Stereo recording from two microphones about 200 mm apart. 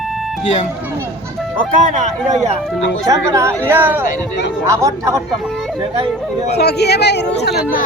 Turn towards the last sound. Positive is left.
turn(degrees=55)  # may be behind; listen again after turning